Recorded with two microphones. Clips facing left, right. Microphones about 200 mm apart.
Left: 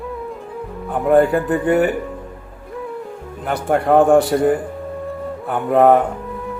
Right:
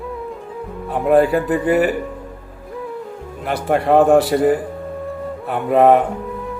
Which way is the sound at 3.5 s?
Centre (ahead or behind).